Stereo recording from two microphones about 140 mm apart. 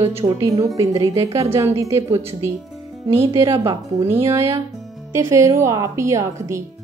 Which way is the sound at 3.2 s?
20° right (ahead or behind).